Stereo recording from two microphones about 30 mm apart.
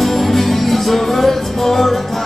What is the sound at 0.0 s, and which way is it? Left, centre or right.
Music, centre.